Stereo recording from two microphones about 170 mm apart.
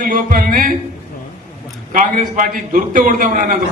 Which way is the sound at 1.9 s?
50° right (ahead or behind).